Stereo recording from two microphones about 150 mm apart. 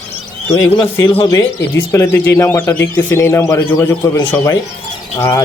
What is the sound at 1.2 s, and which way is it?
Speech, 25° left (ahead or behind).